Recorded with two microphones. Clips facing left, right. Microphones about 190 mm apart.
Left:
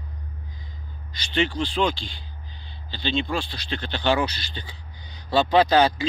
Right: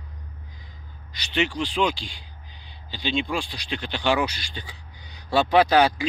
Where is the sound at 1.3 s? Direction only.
10° right (ahead or behind).